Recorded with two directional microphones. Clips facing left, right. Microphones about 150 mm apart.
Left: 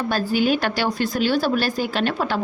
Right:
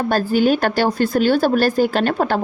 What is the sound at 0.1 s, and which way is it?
Speech, 45° right (ahead or behind).